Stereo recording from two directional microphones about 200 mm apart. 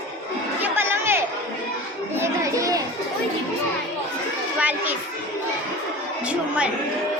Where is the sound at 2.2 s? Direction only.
15° right (ahead or behind).